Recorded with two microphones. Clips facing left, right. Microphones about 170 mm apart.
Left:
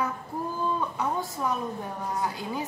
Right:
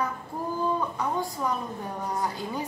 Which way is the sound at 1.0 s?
5° left (ahead or behind).